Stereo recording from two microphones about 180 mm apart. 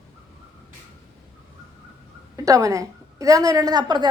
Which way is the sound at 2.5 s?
20° right (ahead or behind).